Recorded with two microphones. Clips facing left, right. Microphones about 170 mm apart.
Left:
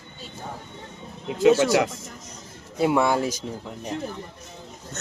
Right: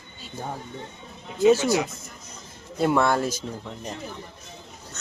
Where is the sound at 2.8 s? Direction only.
10° left (ahead or behind).